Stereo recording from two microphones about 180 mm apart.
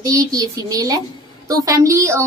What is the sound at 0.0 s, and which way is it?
A woman's voice, 20° right (ahead or behind).